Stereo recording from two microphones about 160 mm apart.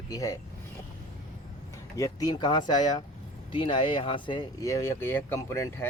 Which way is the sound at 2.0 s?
25° left (ahead or behind).